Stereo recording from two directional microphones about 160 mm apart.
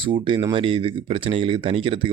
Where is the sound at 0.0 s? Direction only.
30° right (ahead or behind).